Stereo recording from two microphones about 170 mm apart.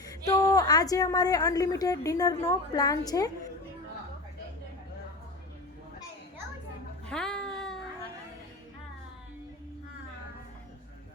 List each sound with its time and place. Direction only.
0.3 s a woman's voice: 20° left (ahead or behind)
7.1 s music: 5° left (ahead or behind)